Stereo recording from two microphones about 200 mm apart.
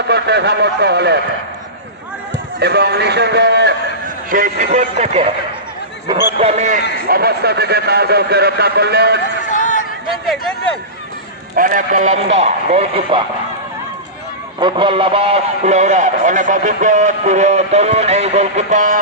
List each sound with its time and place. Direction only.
0.1 s a man's voice: 55° right (ahead or behind)
2.6 s a man's voice: 55° right (ahead or behind)
4.3 s a man's voice: 45° right (ahead or behind)
6.4 s a man's voice: 35° right (ahead or behind)
7.1 s a man's voice: 50° right (ahead or behind)
9.5 s a sound: 40° left (ahead or behind)
10.2 s speech: centre (ahead or behind)
11.5 s a man's voice: 45° right (ahead or behind); by 13.2 s 25° right (ahead or behind)
14.6 s a man's voice: 25° right (ahead or behind)